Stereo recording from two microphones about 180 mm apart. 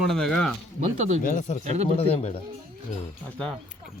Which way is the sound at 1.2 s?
45° left (ahead or behind).